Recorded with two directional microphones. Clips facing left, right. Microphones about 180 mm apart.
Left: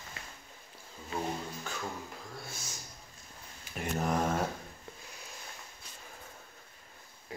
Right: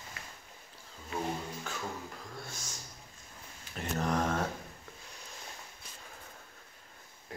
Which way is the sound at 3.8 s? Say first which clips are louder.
Left 1 dB; 10° left (ahead or behind).